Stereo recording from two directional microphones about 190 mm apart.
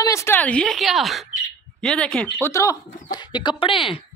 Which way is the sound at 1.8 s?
5° left (ahead or behind).